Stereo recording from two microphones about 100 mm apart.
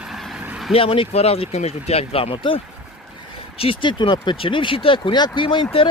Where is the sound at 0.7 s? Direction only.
65° left (ahead or behind); by 2.3 s 90° left.